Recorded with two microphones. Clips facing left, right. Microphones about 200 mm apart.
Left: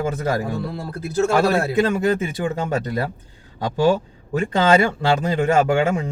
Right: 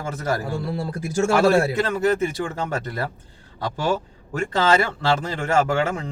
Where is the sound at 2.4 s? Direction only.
15° left (ahead or behind).